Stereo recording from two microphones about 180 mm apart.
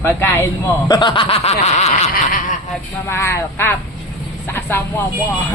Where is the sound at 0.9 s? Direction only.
25° left (ahead or behind).